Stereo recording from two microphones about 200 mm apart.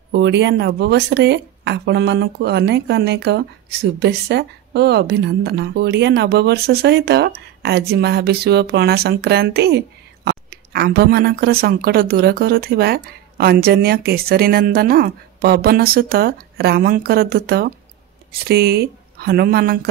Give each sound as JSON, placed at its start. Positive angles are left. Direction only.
{"t": 0.1, "sound": "a woman's voice", "side_deg": -60}